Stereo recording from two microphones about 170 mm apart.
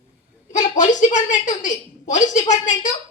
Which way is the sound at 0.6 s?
45° left (ahead or behind).